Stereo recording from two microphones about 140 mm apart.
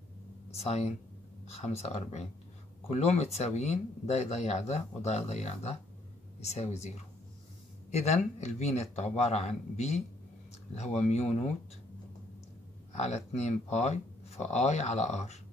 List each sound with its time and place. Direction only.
0.6 s speech: 50° left (ahead or behind)
7.9 s speech: 50° left (ahead or behind)
12.9 s speech: 50° left (ahead or behind)